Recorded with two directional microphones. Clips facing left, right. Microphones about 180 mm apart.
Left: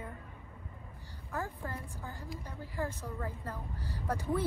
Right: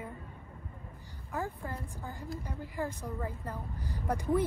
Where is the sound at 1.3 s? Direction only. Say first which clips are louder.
Right 2 dB; 15° right (ahead or behind).